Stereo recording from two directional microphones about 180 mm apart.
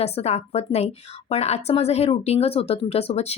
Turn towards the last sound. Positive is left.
turn(degrees=35)  # may be behind; listen again after turning